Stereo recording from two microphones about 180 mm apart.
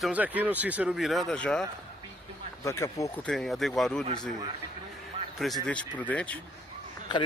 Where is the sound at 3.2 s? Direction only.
5° left (ahead or behind).